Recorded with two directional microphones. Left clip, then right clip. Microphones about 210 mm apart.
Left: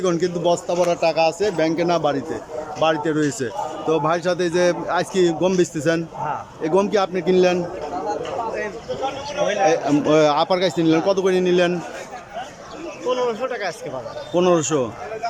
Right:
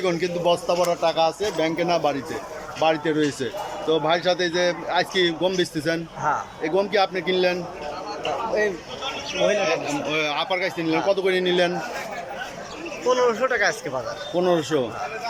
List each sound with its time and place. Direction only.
0.0 s a man's voice: 10° left (ahead or behind)
10.1 s a man's voice: 25° left (ahead or behind); by 11.7 s 10° left (ahead or behind)
13.1 s a man's voice: 5° left (ahead or behind)